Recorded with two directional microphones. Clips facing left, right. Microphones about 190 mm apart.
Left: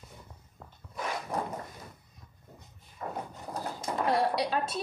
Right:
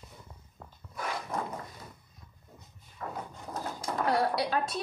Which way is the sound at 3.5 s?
20° left (ahead or behind).